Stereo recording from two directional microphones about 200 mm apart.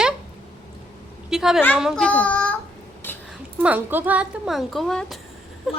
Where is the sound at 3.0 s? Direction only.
10° left (ahead or behind).